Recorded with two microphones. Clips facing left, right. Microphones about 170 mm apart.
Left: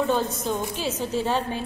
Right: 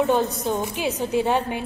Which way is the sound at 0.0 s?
15° right (ahead or behind).